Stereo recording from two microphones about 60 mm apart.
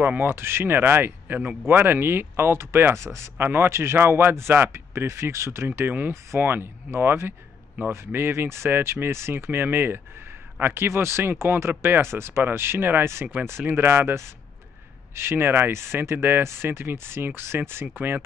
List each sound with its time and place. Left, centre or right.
0.2 s speech: right
5.8 s speech: right